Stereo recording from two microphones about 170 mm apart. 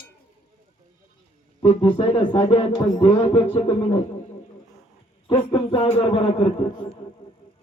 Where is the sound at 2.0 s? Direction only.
35° left (ahead or behind).